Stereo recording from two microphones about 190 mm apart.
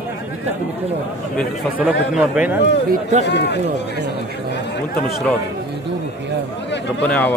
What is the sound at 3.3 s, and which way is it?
Speech, 60° left (ahead or behind).